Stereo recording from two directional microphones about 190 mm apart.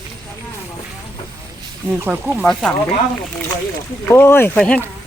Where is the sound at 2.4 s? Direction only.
5° left (ahead or behind).